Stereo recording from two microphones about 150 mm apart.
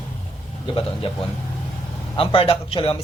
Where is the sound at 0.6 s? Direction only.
35° left (ahead or behind).